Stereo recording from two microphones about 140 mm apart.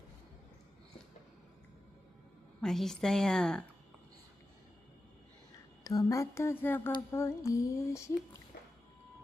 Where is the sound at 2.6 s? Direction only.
5° left (ahead or behind).